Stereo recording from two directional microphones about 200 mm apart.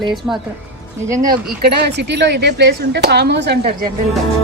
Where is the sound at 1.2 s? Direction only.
50° right (ahead or behind).